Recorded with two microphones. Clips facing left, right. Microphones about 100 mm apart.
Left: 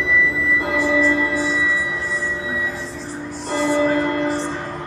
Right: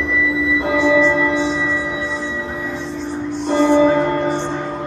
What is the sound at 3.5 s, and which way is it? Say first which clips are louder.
Music: right 5 dB; centre (ahead or behind).